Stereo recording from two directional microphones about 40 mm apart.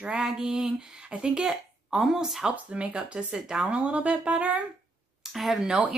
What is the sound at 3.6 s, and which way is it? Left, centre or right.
Speech, right.